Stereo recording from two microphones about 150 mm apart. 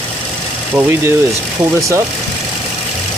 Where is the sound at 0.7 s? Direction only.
15° right (ahead or behind).